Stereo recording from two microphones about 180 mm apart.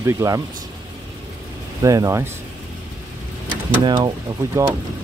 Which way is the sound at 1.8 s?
20° right (ahead or behind).